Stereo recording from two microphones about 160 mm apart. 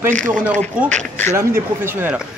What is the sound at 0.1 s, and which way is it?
Speech, 50° right (ahead or behind).